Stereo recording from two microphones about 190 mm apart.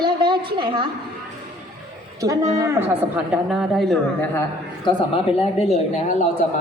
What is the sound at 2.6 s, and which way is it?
Speech, 15° right (ahead or behind).